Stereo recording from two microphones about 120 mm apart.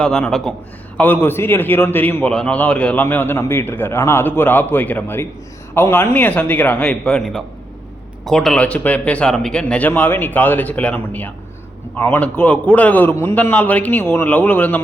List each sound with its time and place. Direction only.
0.0 s speech: 5° left (ahead or behind)
0.9 s a man's voice: 15° left (ahead or behind)